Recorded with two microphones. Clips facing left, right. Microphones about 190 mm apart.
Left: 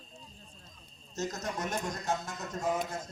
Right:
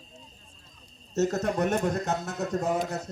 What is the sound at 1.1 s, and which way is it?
Speech, 65° right (ahead or behind).